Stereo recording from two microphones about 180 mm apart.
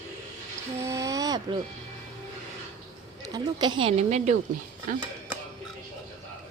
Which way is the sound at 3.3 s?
25° right (ahead or behind).